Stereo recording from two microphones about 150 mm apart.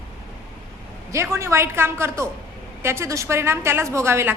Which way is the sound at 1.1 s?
20° right (ahead or behind).